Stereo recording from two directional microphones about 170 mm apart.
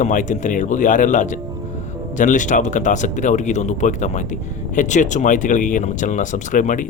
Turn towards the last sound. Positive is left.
turn(degrees=50)  # may be behind; listen again after turning